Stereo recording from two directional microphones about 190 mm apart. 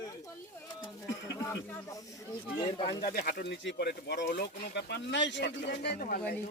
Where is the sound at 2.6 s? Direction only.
25° left (ahead or behind).